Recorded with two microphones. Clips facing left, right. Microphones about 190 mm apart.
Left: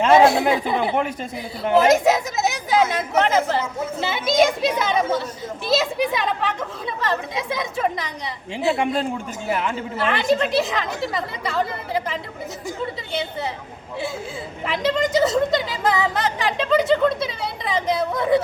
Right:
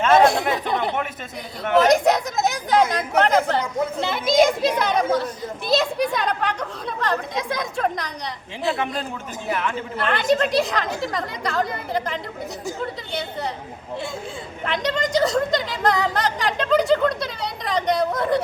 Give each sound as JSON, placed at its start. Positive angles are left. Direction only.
{"t": 0.2, "sound": "speech", "side_deg": 0}
{"t": 1.8, "sound": "a woman's voice", "side_deg": 5}
{"t": 8.7, "sound": "a man's voice", "side_deg": 25}
{"t": 10.0, "sound": "a woman's voice", "side_deg": 0}
{"t": 14.6, "sound": "a woman's voice", "side_deg": 5}